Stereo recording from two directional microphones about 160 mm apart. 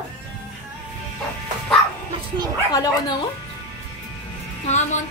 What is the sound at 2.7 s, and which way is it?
Speech, 25° left (ahead or behind).